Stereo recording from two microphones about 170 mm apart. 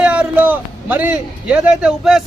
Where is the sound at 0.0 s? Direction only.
5° right (ahead or behind).